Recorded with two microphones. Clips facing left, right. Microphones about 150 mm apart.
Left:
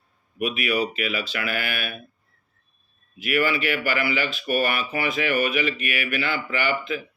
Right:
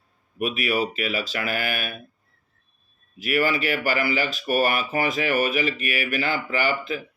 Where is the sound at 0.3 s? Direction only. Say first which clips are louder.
Even; 40° right (ahead or behind).